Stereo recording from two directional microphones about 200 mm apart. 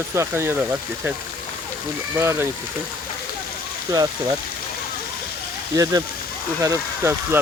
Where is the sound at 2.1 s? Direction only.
15° right (ahead or behind).